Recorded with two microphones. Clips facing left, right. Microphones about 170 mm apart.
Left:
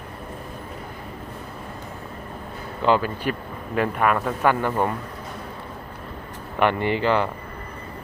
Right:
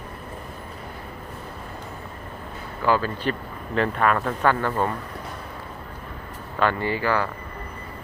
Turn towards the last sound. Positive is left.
turn(degrees=20)  # may be behind; listen again after turning